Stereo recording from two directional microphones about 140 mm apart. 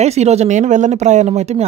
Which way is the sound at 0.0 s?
50° right (ahead or behind).